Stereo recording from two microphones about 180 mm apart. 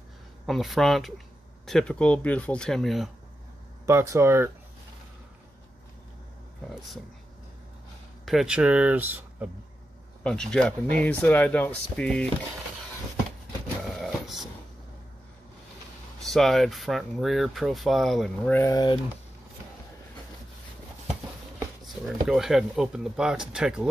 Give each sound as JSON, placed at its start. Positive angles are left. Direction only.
{"t": 0.5, "sound": "speech", "side_deg": 0}
{"t": 3.8, "sound": "speech", "side_deg": -15}
{"t": 8.3, "sound": "speech", "side_deg": -5}
{"t": 10.2, "sound": "speech", "side_deg": 5}
{"t": 13.9, "sound": "vehicle", "side_deg": 0}
{"t": 16.2, "sound": "speech", "side_deg": 0}
{"t": 18.5, "sound": "speech", "side_deg": 15}
{"t": 22.3, "sound": "speech", "side_deg": 0}